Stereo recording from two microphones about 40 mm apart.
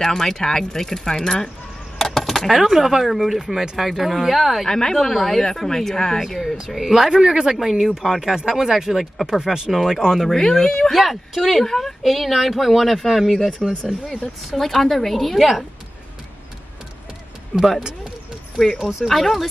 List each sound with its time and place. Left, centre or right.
0.0 s speech: centre
4.6 s speech: centre
4.9 s speech: centre
6.4 s speech: centre
10.0 s speech: centre
10.3 s speech: centre
10.9 s speech: centre
14.5 s speech: centre
17.6 s speech: centre
19.1 s speech: centre